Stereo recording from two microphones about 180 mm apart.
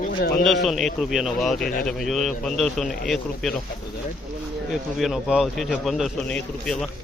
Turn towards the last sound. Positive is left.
turn(degrees=5)  # may be behind; listen again after turning